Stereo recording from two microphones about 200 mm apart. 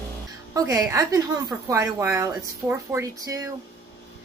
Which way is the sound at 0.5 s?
15° right (ahead or behind).